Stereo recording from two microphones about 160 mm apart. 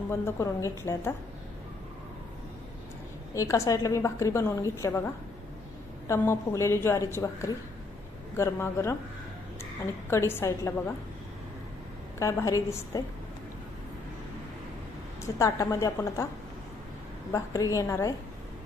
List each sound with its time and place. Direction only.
0.1 s a woman's voice: 15° left (ahead or behind)
3.3 s a woman's voice: 20° left (ahead or behind)
6.1 s a woman's voice: 20° left (ahead or behind)
10.1 s a woman's voice: 15° left (ahead or behind)
12.2 s a woman's voice: 20° left (ahead or behind)
15.2 s a woman's voice: 20° left (ahead or behind)
17.3 s a woman's voice: 20° left (ahead or behind)